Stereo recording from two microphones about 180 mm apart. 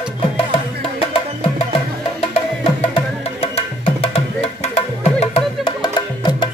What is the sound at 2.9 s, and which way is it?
Music, 30° left (ahead or behind).